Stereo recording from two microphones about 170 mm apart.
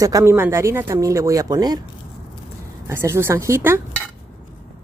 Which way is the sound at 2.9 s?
15° right (ahead or behind).